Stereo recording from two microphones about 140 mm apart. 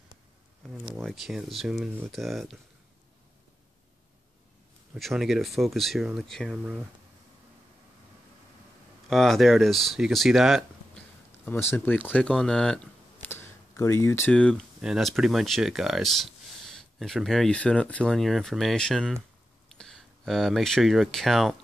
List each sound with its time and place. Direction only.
1.0 s speech: centre (ahead or behind)
4.9 s speech: centre (ahead or behind)
9.1 s speech: centre (ahead or behind)
11.4 s speech: 15° left (ahead or behind)
13.3 s a sound: 20° left (ahead or behind)
14.3 s speech: 5° left (ahead or behind)